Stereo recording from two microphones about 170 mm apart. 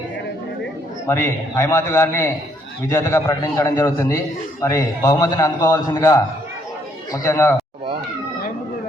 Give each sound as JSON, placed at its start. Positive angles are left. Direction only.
{"t": 1.0, "sound": "a man's voice", "side_deg": 15}